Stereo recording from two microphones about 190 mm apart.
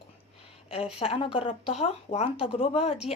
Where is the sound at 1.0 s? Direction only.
30° left (ahead or behind).